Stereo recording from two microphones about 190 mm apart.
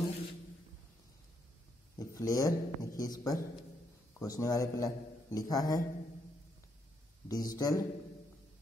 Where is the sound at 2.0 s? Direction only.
20° left (ahead or behind).